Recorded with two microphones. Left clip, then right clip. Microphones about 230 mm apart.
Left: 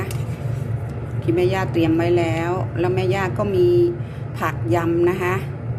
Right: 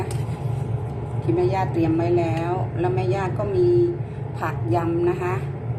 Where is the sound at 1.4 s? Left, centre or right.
Left.